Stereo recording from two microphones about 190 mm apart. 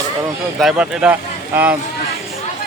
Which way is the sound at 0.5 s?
Centre (ahead or behind).